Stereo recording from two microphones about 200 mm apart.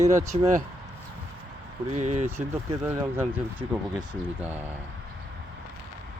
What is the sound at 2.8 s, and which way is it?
Speech, 10° right (ahead or behind).